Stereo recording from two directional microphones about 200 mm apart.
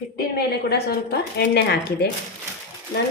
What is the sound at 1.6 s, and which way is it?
Speech, 55° left (ahead or behind).